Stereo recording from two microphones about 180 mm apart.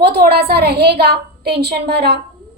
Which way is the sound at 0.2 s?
60° right (ahead or behind).